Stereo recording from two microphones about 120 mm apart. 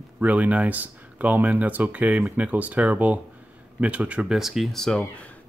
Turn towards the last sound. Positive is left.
turn(degrees=10)  # may be behind; listen again after turning